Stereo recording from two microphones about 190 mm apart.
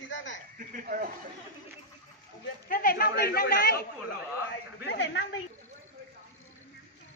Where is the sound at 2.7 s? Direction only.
50° left (ahead or behind); by 5.3 s 65° left (ahead or behind).